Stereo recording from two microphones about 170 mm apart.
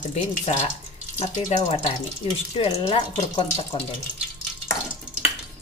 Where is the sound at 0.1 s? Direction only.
40° left (ahead or behind).